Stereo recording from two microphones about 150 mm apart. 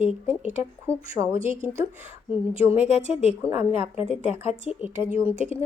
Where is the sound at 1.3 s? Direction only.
35° left (ahead or behind).